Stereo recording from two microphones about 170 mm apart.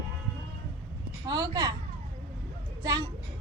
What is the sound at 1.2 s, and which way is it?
Speech, 25° right (ahead or behind).